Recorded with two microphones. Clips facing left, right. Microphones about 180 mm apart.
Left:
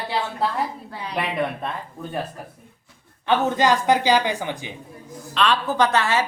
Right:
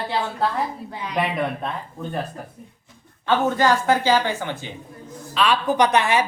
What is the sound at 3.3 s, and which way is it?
A woman's voice, 15° left (ahead or behind).